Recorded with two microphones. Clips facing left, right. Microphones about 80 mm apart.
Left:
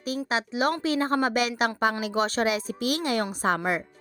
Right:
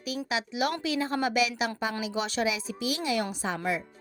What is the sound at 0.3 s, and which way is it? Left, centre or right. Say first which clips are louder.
A woman's voice: left 3 dB; left.